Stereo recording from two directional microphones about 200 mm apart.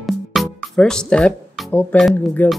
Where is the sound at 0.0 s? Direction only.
Centre (ahead or behind).